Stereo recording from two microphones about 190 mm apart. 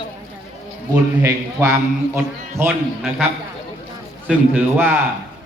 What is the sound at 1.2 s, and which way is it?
A man's voice, 15° right (ahead or behind).